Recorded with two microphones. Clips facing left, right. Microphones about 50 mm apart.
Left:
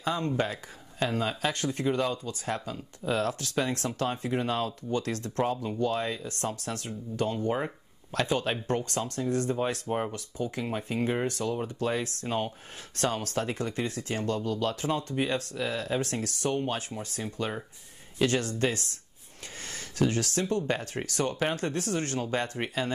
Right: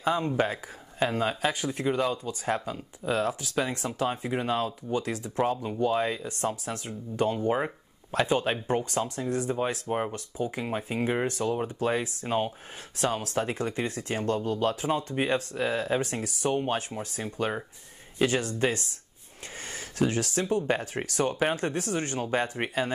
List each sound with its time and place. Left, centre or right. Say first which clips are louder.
0.0 s speech: right 3 dB; centre
19.7 s speech: even; centre